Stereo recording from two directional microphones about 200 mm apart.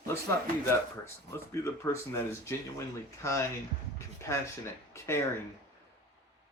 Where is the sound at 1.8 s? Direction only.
15° left (ahead or behind).